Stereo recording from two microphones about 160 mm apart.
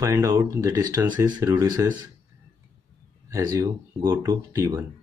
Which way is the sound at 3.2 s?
25° right (ahead or behind).